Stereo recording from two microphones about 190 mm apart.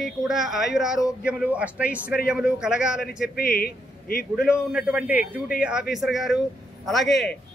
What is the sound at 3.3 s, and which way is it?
Speech, 50° left (ahead or behind).